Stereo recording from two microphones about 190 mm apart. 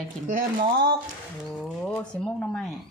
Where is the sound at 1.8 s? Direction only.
5° left (ahead or behind).